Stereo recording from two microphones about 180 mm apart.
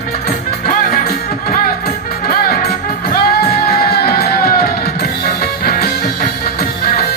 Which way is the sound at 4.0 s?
55° left (ahead or behind).